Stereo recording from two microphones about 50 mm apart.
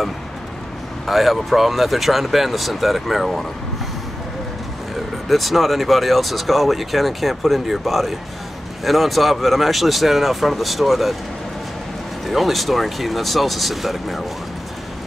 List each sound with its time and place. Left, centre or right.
1.0 s speech: centre
5.3 s speech: centre
12.3 s speech: centre